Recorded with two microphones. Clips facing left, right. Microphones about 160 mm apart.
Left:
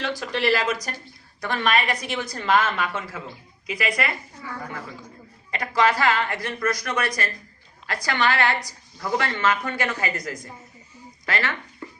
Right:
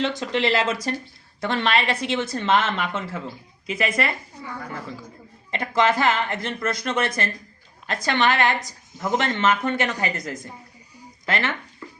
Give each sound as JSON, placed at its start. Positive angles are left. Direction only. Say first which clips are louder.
{"t": 0.0, "sound": "a woman's voice", "louder": "right 2 dB", "side_deg": -25}
{"t": 5.5, "sound": "a woman's voice", "louder": "right 1 dB", "side_deg": -25}